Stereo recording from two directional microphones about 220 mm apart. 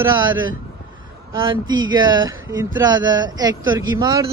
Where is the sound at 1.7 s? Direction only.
20° right (ahead or behind).